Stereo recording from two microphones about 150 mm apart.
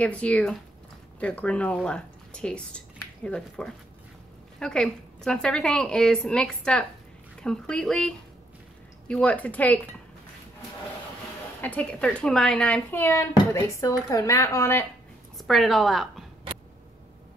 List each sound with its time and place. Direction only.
0.0 s a woman's voice: 10° left (ahead or behind)
11.6 s speech: 10° left (ahead or behind)
15.3 s a woman's voice: centre (ahead or behind)